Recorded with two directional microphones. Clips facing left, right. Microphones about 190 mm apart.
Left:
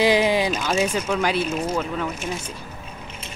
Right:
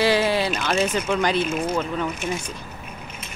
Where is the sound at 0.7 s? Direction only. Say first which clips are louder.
Even; 5° left (ahead or behind).